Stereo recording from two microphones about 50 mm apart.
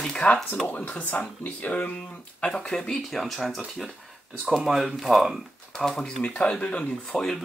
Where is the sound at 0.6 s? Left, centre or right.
Left; by 3.6 s centre.